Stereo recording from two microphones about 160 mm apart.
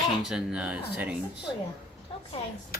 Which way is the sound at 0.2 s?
5° right (ahead or behind).